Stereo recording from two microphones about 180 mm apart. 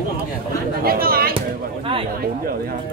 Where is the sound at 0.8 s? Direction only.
55° right (ahead or behind).